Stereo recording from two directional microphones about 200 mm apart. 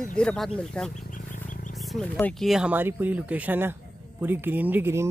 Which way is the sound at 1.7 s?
Centre (ahead or behind).